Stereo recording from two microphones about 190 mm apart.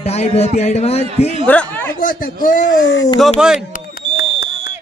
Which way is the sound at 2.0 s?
45° left (ahead or behind).